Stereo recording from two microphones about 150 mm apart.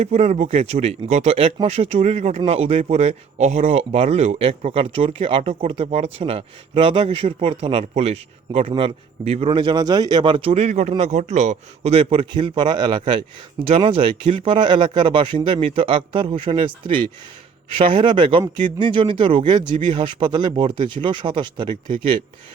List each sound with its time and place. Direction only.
0.0 s speech: 45° right (ahead or behind)
9.5 s speech: 30° right (ahead or behind)